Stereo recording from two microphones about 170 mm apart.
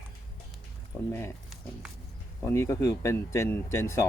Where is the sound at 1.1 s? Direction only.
15° left (ahead or behind).